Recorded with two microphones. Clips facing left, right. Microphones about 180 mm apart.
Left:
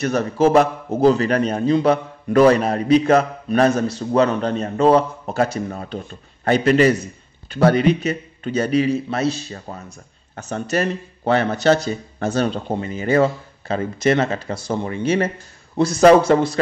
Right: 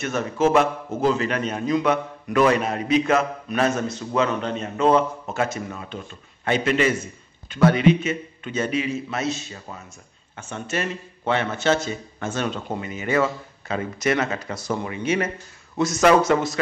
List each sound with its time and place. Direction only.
0.0 s a man's voice: 35° left (ahead or behind)